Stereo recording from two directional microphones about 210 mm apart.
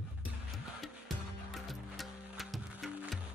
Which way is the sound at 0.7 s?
Centre (ahead or behind).